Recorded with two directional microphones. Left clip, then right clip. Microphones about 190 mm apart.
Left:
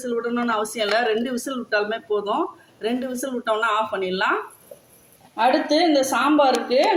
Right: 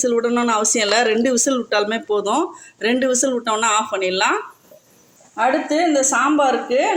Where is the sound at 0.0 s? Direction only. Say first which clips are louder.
Right 7 dB; 40° right (ahead or behind).